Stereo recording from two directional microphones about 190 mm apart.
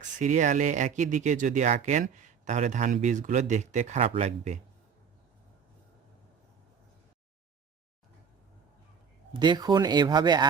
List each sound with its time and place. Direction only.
0.2 s speech: 40° right (ahead or behind)
9.3 s speech: 25° right (ahead or behind)